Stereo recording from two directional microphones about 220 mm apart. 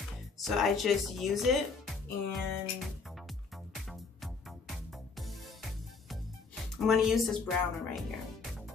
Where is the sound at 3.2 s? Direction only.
Centre (ahead or behind).